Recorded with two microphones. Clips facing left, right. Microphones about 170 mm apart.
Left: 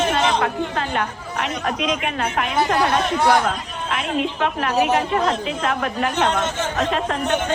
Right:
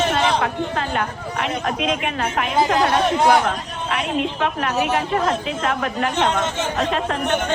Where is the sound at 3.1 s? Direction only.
15° right (ahead or behind).